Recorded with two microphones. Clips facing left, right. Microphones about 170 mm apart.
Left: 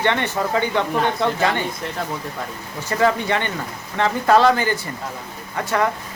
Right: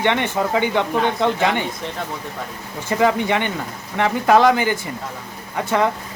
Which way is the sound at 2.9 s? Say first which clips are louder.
Right 1 dB; 15° right (ahead or behind).